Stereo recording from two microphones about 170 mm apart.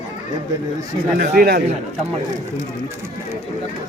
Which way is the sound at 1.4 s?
60° right (ahead or behind).